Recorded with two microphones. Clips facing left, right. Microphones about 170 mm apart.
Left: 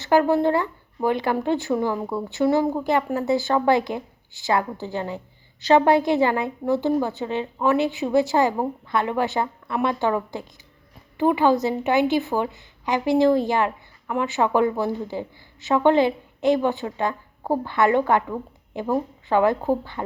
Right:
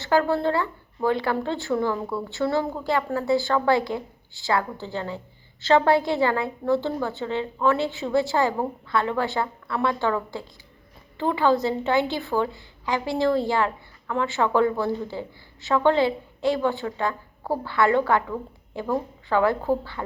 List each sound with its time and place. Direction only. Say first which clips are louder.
0.0 s a woman's voice: left 3 dB; 20° left (ahead or behind)